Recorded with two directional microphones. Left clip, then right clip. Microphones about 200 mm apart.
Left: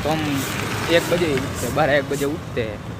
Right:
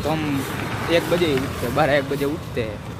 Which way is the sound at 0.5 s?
50° left (ahead or behind).